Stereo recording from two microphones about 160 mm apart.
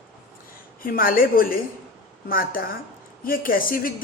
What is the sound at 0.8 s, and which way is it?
Speech, 65° left (ahead or behind).